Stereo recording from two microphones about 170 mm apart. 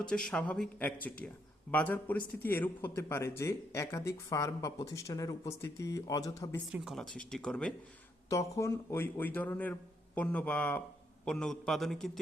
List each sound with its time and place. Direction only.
0.1 s a man's voice: 5° left (ahead or behind)
6.7 s speech: 5° right (ahead or behind)
8.3 s a man's voice: 15° left (ahead or behind); by 12.2 s centre (ahead or behind)